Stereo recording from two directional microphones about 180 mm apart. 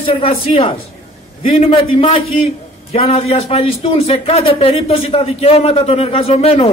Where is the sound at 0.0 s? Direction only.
30° left (ahead or behind).